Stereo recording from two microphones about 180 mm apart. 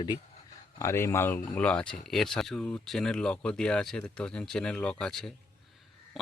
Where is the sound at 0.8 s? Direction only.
15° left (ahead or behind).